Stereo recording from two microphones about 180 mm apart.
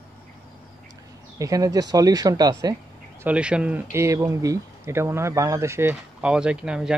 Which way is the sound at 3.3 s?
5° right (ahead or behind).